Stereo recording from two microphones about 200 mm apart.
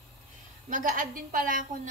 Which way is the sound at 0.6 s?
40° right (ahead or behind).